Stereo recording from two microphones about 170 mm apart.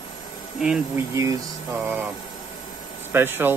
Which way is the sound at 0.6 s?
5° right (ahead or behind).